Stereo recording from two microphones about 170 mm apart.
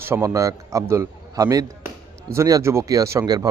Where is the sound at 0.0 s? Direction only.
15° right (ahead or behind).